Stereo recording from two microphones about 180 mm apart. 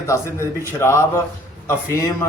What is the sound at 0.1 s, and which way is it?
Speech, 15° left (ahead or behind).